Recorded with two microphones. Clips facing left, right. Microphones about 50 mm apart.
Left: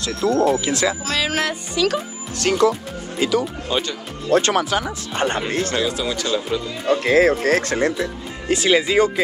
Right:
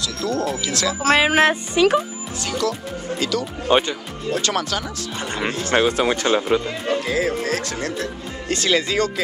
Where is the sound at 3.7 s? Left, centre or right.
Right.